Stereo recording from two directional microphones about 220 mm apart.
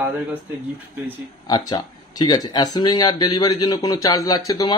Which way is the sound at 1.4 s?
15° left (ahead or behind).